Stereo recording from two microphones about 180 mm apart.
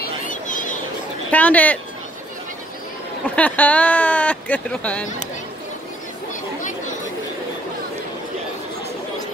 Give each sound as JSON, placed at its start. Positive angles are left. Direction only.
{"t": 0.0, "sound": "a sound", "side_deg": 45}
{"t": 1.3, "sound": "speech", "side_deg": 10}
{"t": 3.3, "sound": "speech", "side_deg": 10}